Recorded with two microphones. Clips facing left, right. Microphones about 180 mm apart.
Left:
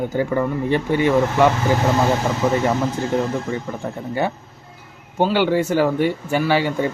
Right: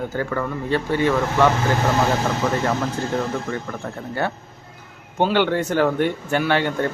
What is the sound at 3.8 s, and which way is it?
Speech, 15° left (ahead or behind).